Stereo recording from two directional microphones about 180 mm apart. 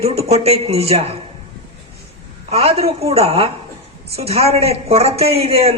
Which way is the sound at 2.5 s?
35° right (ahead or behind).